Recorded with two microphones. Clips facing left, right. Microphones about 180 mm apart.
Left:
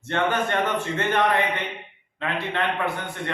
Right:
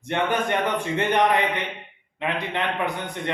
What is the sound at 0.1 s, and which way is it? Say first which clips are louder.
A man's voice: even; 15° right (ahead or behind).